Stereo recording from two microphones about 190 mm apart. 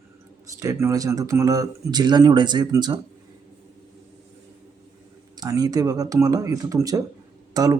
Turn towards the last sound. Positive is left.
turn(degrees=-20)  # may be behind; listen again after turning